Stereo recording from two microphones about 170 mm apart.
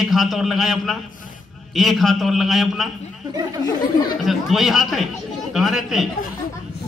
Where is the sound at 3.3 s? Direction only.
25° right (ahead or behind).